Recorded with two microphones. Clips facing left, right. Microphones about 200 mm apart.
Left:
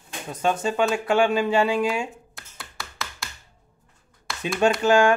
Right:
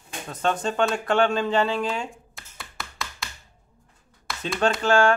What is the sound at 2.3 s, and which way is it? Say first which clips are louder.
Tap: even; centre (ahead or behind).